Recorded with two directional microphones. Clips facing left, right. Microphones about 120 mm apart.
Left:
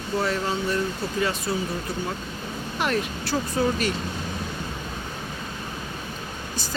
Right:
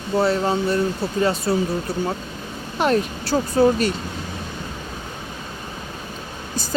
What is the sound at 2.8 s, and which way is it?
Speech, 35° right (ahead or behind).